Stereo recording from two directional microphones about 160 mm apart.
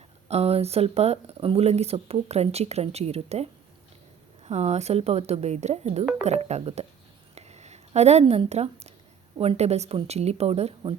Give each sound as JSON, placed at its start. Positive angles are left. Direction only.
{"t": 0.3, "sound": "speech", "side_deg": -40}
{"t": 7.3, "sound": "a sound", "side_deg": -45}
{"t": 9.4, "sound": "speech", "side_deg": -40}